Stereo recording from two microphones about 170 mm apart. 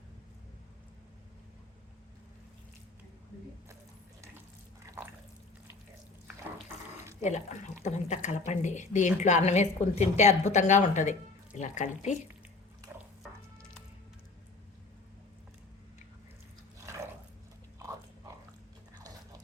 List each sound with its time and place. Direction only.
7.2 s speech: 45° left (ahead or behind)